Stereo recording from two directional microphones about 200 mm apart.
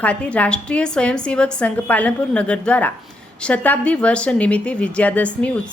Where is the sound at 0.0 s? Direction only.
5° left (ahead or behind).